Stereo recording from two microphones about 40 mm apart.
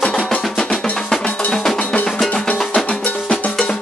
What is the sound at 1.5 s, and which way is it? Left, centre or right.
Cowbell, centre.